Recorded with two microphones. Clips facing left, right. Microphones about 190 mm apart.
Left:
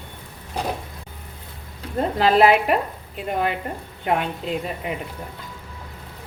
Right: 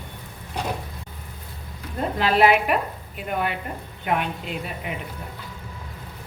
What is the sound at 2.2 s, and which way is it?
A woman's voice, 35° left (ahead or behind).